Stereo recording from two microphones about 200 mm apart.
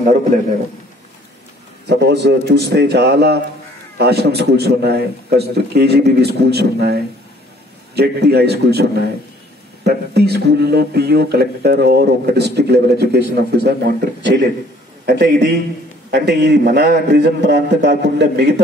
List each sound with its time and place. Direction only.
1.9 s a man's voice: 55° right (ahead or behind)
9.8 s speech: 55° right (ahead or behind)